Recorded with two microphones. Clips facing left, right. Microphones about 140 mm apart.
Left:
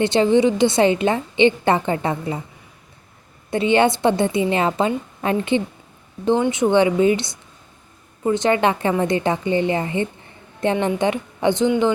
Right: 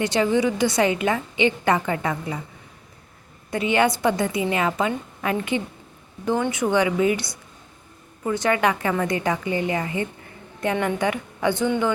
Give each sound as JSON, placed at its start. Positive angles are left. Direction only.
{"t": 0.0, "sound": "a woman's voice", "side_deg": 25}
{"t": 3.5, "sound": "a woman's voice", "side_deg": 30}